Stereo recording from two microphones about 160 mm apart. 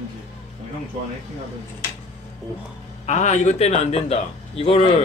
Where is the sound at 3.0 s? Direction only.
45° left (ahead or behind).